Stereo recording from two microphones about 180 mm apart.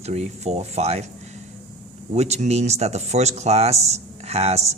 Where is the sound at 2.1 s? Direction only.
40° right (ahead or behind).